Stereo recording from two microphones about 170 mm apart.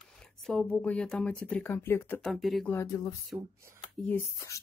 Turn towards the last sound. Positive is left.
turn(degrees=10)  # may be behind; listen again after turning